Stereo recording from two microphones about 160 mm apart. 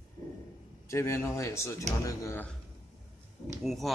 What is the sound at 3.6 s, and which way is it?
Speech, centre (ahead or behind).